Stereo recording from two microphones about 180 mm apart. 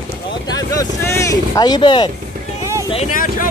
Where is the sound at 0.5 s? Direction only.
20° left (ahead or behind).